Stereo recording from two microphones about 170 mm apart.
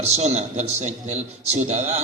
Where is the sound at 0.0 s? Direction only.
40° right (ahead or behind).